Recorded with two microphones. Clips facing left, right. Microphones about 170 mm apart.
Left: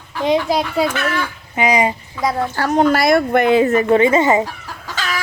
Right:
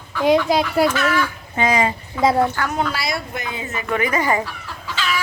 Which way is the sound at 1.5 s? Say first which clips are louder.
Left 3 dB; 15° left (ahead or behind).